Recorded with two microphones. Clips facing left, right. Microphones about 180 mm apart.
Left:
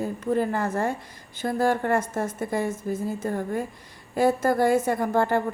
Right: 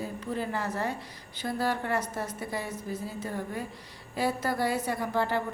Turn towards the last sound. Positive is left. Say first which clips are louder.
# left 6 dB
turn(degrees=50)  # may be behind; listen again after turning